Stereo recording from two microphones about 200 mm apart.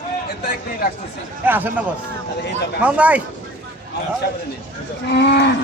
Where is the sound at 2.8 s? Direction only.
5° right (ahead or behind).